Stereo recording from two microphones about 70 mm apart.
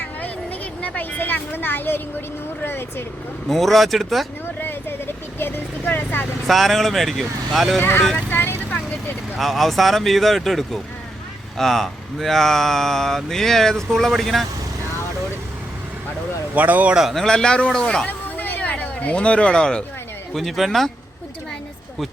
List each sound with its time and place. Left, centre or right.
0.0 s a sound: left
3.5 s speech: centre
4.6 s a sound: left
5.8 s speech: left
6.5 s speech: centre
7.8 s speech: left
8.3 s vehicle: left
9.4 s speech: centre
16.6 s a man's voice: right
16.9 s speech: centre
17.2 s speech: centre
20.3 s speech: centre